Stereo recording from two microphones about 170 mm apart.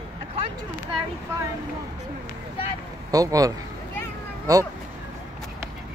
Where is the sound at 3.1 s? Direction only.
20° right (ahead or behind).